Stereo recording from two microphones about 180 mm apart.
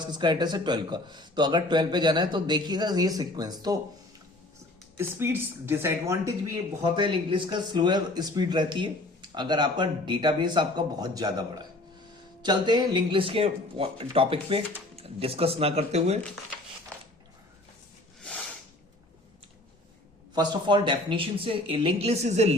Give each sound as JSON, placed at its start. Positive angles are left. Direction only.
{"t": 0.0, "sound": "a man's voice", "side_deg": -25}
{"t": 4.9, "sound": "speech", "side_deg": -15}
{"t": 6.8, "sound": "a man's voice", "side_deg": -25}
{"t": 18.2, "sound": "a sound", "side_deg": 5}
{"t": 20.3, "sound": "a man's voice", "side_deg": -25}